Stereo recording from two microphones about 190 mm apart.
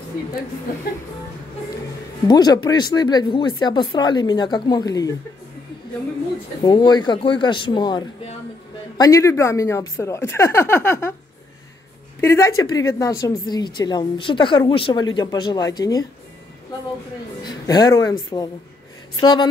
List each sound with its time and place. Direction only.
2.2 s speech: 20° left (ahead or behind)
6.6 s speech: 20° left (ahead or behind)
12.2 s speech: 15° left (ahead or behind)
17.4 s speech: 20° left (ahead or behind)